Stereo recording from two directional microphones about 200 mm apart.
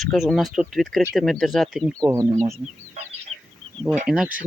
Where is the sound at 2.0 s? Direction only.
15° right (ahead or behind).